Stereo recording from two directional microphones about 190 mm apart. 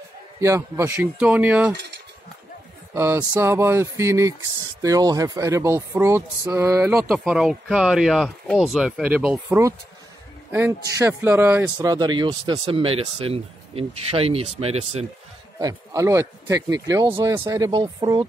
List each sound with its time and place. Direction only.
0.4 s speech: 15° right (ahead or behind)
2.9 s speech: 15° right (ahead or behind); by 15.0 s 35° right (ahead or behind)
15.6 s speech: 15° right (ahead or behind)